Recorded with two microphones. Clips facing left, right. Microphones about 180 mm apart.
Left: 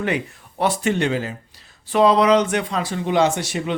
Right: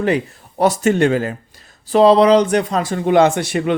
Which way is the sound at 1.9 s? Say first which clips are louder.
Right 5 dB; 35° right (ahead or behind).